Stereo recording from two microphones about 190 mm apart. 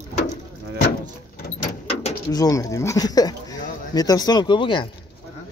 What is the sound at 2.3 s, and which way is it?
Speech, 20° left (ahead or behind).